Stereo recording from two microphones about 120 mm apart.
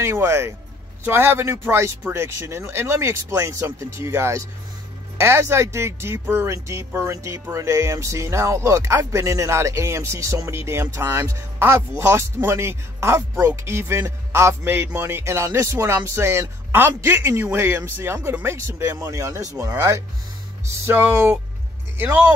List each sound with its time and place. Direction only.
0.0 s speech: 25° right (ahead or behind)